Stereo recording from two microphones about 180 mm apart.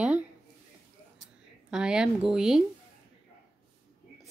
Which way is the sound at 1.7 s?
5° right (ahead or behind).